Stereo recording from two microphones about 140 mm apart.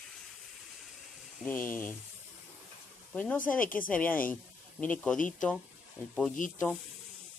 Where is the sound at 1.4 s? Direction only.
15° left (ahead or behind).